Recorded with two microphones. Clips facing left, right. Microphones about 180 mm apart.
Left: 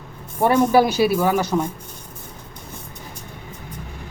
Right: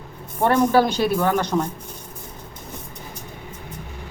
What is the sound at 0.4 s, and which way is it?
Speech, 10° left (ahead or behind).